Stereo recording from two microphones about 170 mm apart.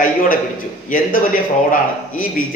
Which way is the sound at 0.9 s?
50° left (ahead or behind).